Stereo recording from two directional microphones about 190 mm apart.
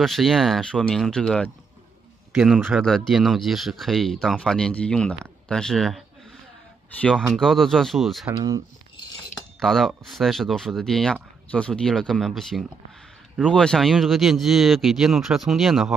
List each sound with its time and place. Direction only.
0.0 s speech: centre (ahead or behind)
8.4 s speech: 20° right (ahead or behind)
9.3 s speech: centre (ahead or behind)